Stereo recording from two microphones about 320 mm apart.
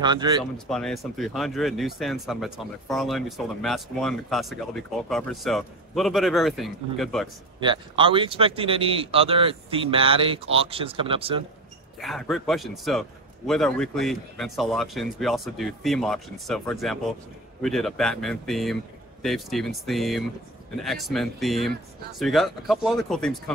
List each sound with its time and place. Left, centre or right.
0.0 s speech: centre
0.4 s speech: centre
7.6 s speech: centre
12.0 s speech: centre